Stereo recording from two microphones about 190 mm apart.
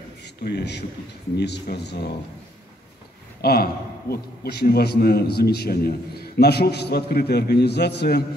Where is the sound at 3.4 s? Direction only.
55° left (ahead or behind).